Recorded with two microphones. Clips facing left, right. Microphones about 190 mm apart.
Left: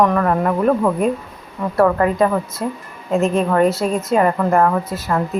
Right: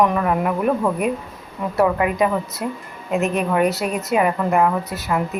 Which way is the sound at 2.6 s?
30° left (ahead or behind).